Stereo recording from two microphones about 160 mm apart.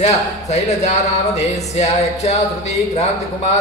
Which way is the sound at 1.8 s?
45° left (ahead or behind).